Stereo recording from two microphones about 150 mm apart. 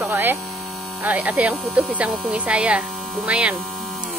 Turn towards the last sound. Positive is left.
turn(degrees=0)  # may be behind; listen again after turning